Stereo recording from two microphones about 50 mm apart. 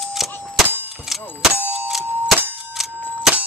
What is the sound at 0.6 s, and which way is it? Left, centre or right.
Clang, right.